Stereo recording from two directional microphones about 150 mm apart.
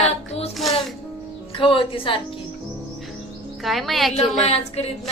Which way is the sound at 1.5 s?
35° left (ahead or behind).